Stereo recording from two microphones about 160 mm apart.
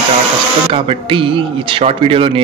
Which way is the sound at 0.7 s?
35° right (ahead or behind).